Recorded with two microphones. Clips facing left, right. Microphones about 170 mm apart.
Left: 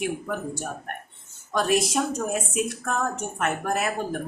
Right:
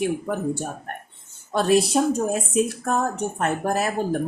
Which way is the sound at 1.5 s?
30° right (ahead or behind).